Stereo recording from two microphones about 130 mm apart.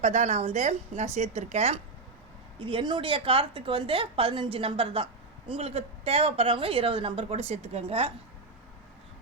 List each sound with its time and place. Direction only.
0.0 s a woman's voice: 60° right (ahead or behind)
2.6 s a woman's voice: 40° right (ahead or behind)